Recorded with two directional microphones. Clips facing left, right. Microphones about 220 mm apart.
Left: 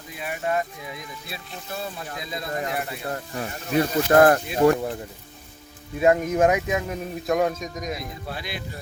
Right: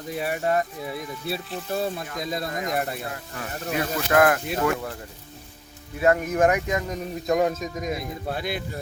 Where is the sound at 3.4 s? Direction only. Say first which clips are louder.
Left 4 dB; 30° left (ahead or behind).